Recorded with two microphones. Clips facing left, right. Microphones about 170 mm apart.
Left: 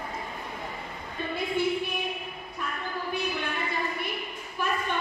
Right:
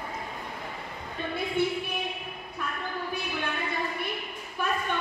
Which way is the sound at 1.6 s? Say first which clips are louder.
Even; 55° right (ahead or behind).